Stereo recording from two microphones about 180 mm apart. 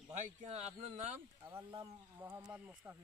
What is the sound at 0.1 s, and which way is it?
Speech, 40° right (ahead or behind).